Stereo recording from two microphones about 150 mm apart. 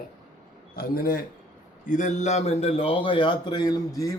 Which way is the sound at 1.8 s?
55° left (ahead or behind).